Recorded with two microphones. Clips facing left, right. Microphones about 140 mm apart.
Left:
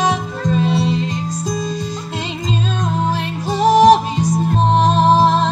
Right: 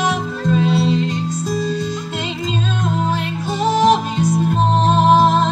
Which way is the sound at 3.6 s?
35° left (ahead or behind).